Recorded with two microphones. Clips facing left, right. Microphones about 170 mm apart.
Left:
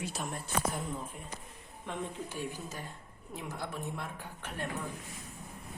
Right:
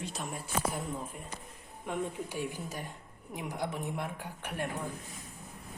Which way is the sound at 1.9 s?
15° right (ahead or behind).